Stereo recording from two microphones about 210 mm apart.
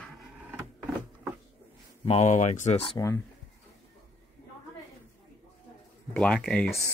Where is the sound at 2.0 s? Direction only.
35° left (ahead or behind).